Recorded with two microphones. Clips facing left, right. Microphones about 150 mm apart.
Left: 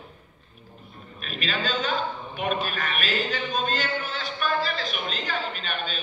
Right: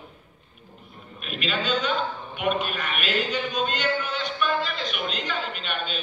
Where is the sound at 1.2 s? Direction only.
40° left (ahead or behind).